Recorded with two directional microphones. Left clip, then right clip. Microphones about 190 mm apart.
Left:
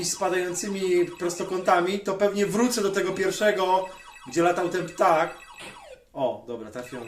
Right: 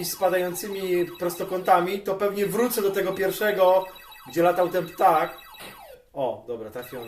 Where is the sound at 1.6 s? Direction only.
15° left (ahead or behind).